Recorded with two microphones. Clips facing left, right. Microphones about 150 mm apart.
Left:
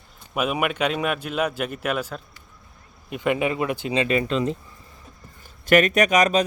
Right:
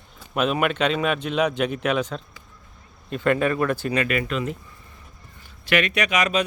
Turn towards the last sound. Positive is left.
turn(degrees=40)  # may be behind; listen again after turning